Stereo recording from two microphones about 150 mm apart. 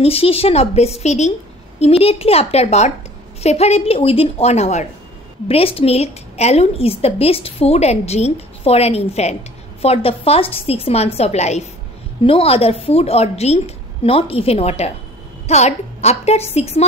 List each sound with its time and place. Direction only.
0.0 s a woman's voice: 40° left (ahead or behind)